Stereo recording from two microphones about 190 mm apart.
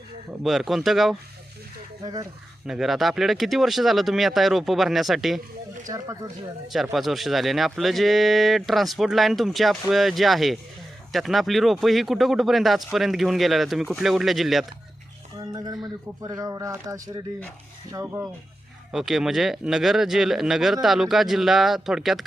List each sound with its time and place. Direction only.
0.4 s speech: centre (ahead or behind)
2.6 s speech: centre (ahead or behind)
5.9 s speech: 15° right (ahead or behind)
6.9 s speech: centre (ahead or behind)
15.5 s speech: 20° right (ahead or behind)
18.9 s speech: centre (ahead or behind)